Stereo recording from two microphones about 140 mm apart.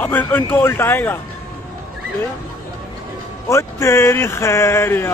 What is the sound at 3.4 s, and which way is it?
Speech, 20° left (ahead or behind).